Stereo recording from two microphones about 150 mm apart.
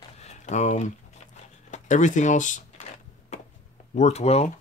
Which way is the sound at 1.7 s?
55° left (ahead or behind).